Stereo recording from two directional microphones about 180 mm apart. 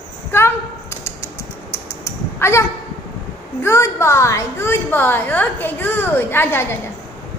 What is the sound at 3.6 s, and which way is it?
A woman's voice, 15° left (ahead or behind).